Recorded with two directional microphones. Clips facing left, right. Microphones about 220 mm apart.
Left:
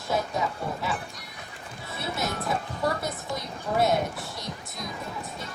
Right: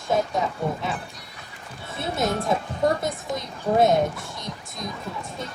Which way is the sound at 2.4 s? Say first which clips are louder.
Right 5 dB; 20° right (ahead or behind).